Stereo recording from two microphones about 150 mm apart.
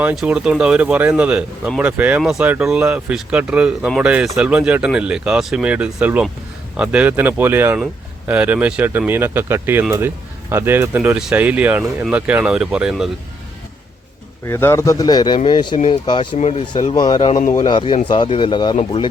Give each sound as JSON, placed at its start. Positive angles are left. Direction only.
{"t": 0.0, "sound": "speech", "side_deg": -10}
{"t": 14.4, "sound": "a man's voice", "side_deg": 20}
{"t": 16.4, "sound": "speech", "side_deg": 45}
{"t": 16.9, "sound": "a man's voice", "side_deg": 30}